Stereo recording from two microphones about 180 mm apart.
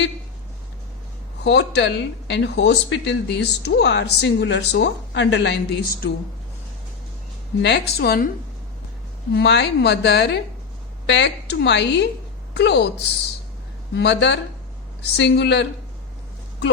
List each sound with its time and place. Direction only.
1.5 s speech: 70° left (ahead or behind)
7.6 s a woman's voice: 70° left (ahead or behind)
9.3 s speech: 70° left (ahead or behind)
11.0 s speech: 80° left
13.9 s speech: 75° left (ahead or behind)